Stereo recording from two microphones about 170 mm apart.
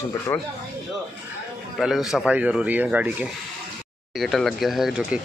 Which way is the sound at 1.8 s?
Centre (ahead or behind).